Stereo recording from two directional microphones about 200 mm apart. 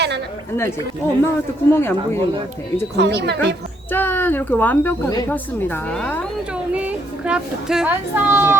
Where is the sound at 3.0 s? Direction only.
55° right (ahead or behind).